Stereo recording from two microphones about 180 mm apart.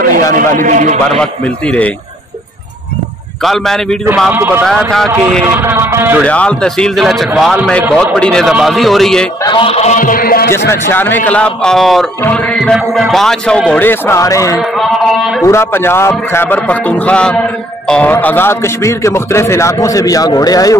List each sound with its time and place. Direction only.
0.3 s a man's voice: 45° right (ahead or behind)
1.2 s a man's voice: 5° left (ahead or behind)
3.4 s a man's voice: centre (ahead or behind)
4.3 s a sound: 10° right (ahead or behind)
4.6 s a man's voice: centre (ahead or behind)
5.5 s a sound: 10° right (ahead or behind)
6.2 s a man's voice: 5° left (ahead or behind)
9.4 s a man's voice: 25° left (ahead or behind); by 10.5 s 55° left (ahead or behind)
10.7 s a man's voice: 10° left (ahead or behind)